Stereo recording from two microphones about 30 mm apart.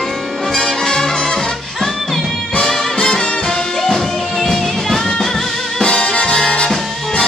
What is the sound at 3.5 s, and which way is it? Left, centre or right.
Music, centre.